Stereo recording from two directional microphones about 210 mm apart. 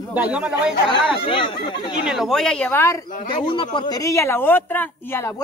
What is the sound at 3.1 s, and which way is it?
Speech, 40° left (ahead or behind).